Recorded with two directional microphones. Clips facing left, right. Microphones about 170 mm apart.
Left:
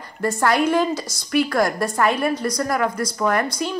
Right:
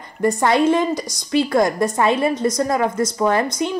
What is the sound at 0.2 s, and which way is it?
A woman's voice, 15° right (ahead or behind).